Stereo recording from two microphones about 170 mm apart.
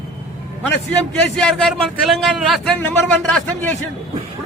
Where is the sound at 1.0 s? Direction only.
5° left (ahead or behind).